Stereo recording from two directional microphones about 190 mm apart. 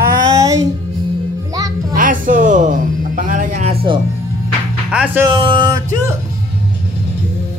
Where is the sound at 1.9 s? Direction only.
45° right (ahead or behind).